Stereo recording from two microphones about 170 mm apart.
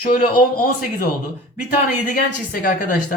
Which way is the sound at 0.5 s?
60° left (ahead or behind).